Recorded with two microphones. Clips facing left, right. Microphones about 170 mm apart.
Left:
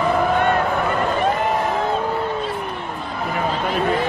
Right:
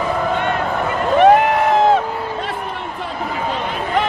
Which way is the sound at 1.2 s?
75° right (ahead or behind).